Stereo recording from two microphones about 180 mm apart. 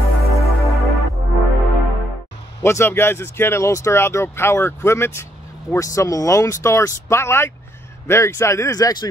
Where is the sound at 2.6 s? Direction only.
15° left (ahead or behind).